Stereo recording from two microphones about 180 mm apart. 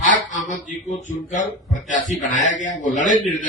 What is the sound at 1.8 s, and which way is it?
A man's voice, 45° left (ahead or behind).